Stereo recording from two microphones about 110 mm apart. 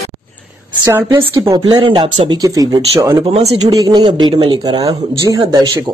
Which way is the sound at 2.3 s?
35° right (ahead or behind).